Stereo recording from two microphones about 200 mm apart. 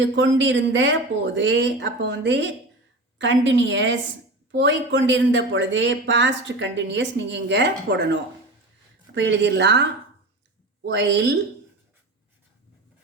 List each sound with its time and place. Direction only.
0.0 s a woman's voice: 65° right (ahead or behind)
10.8 s speech: 60° right (ahead or behind)